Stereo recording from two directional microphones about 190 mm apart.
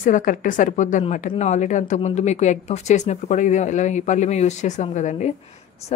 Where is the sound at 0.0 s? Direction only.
45° left (ahead or behind).